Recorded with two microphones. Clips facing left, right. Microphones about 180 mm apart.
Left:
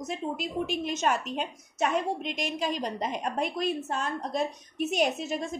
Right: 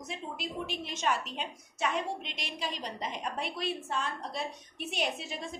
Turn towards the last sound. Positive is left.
turn(degrees=45)  # may be behind; listen again after turning